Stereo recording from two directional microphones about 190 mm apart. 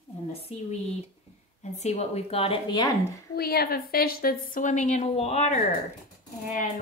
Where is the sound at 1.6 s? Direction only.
35° left (ahead or behind).